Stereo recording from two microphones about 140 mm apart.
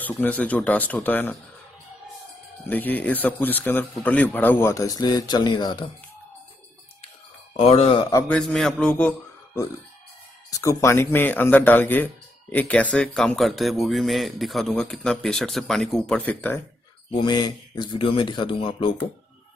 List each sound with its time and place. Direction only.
0.2 s speech: 10° left (ahead or behind)
2.7 s speech: 10° left (ahead or behind); by 5.9 s 30° left (ahead or behind)
7.5 s speech: 45° left (ahead or behind)
8.3 s speech: 5° left (ahead or behind)
10.5 s speech: 20° left (ahead or behind)
17.1 s speech: 30° left (ahead or behind)